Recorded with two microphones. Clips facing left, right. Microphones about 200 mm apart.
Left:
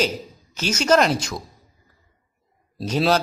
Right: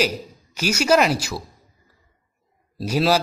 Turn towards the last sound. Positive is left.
turn(degrees=-10)  # may be behind; listen again after turning